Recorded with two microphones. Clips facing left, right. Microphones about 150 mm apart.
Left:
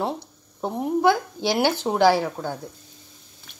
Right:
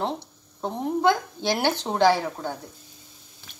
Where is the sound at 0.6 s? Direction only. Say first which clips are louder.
Left 2 dB; 10° left (ahead or behind).